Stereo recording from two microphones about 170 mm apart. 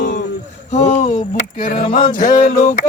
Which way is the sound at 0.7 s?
45° left (ahead or behind).